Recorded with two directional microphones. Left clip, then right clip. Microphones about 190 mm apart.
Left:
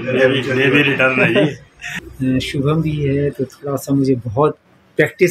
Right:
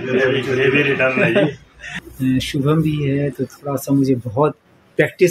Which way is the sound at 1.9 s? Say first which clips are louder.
Left 1 dB; 10° right (ahead or behind).